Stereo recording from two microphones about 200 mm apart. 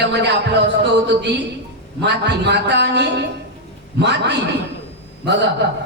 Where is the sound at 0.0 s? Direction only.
60° right (ahead or behind).